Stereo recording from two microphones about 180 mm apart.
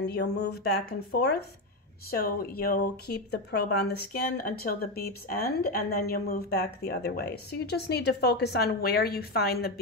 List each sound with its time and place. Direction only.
0.0 s speech: 65° left (ahead or behind)